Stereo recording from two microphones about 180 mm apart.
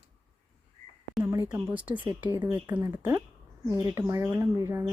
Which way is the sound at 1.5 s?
10° right (ahead or behind).